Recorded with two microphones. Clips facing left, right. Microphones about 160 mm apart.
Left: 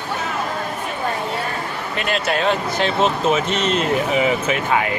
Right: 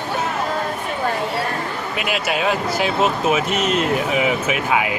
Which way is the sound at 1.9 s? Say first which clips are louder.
Left 2 dB; 5° right (ahead or behind).